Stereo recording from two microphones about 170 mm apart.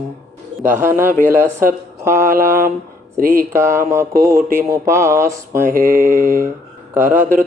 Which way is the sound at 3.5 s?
15° right (ahead or behind).